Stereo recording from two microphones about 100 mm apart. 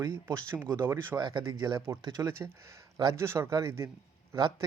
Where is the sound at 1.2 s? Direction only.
50° right (ahead or behind).